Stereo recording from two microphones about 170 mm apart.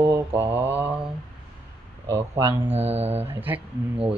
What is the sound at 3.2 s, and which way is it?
Speech, 10° right (ahead or behind).